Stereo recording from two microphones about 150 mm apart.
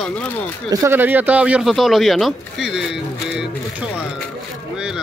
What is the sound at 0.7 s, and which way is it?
Speech, 20° right (ahead or behind).